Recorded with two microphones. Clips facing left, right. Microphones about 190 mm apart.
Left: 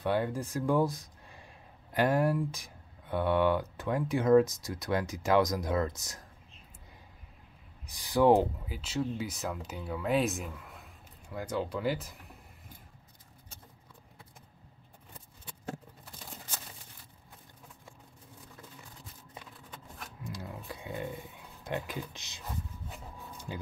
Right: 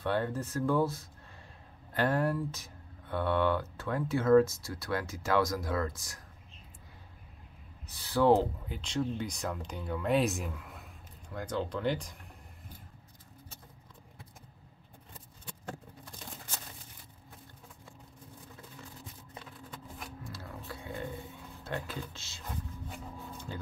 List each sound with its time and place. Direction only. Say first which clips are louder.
0.0 s speech: left 1 dB; 10° left (ahead or behind)
7.8 s speech: left 2 dB; 15° left (ahead or behind)
8.6 s speech: even; 5° left (ahead or behind)
20.2 s roaring cats: left 6 dB; 15° left (ahead or behind)
21.6 s speech: left 2 dB; 15° left (ahead or behind)
23.5 s speech: left 2 dB; 15° left (ahead or behind)